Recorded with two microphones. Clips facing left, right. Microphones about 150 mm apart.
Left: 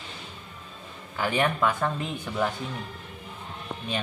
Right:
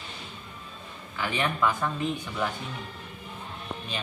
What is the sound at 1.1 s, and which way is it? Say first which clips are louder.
Speech: left 4 dB; 45° left (ahead or behind).